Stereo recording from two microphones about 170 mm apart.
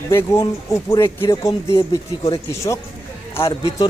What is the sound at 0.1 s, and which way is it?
Speech, 15° left (ahead or behind).